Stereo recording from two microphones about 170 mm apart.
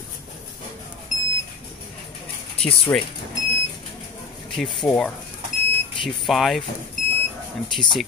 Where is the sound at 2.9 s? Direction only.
15° left (ahead or behind).